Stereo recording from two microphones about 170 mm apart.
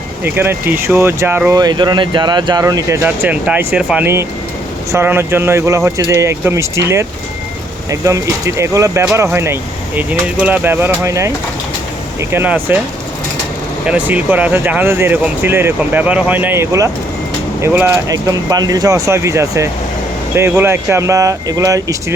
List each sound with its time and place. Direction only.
0.3 s speech: 15° right (ahead or behind)
12.3 s speech: 10° right (ahead or behind)
13.8 s speech: 10° right (ahead or behind)